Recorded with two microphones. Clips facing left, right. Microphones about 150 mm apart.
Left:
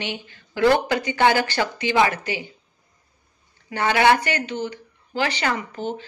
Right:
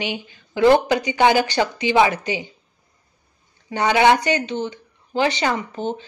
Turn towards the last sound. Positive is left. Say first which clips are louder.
# right 3 dB
turn(degrees=-20)  # may be behind; listen again after turning